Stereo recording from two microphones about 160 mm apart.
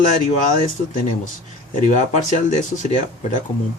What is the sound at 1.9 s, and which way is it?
Speech, 45° left (ahead or behind).